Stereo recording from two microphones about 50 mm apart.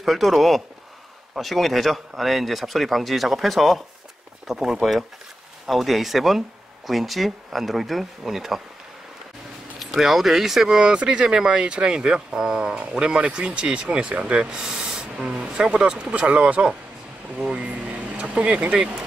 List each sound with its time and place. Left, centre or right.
0.0 s speech: centre
4.5 s speech: centre
9.8 s speech: centre; by 14.4 s right
14.4 s speech: centre